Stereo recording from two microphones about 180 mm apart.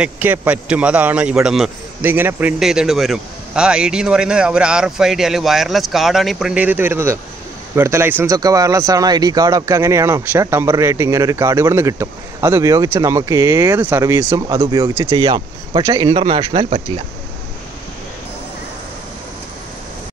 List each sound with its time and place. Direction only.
0.0 s a man's voice: 10° right (ahead or behind); by 16.6 s 25° right (ahead or behind)